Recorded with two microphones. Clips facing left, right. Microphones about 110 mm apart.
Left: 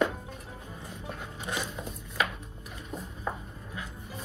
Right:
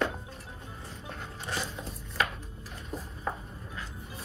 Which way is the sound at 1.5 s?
Centre (ahead or behind).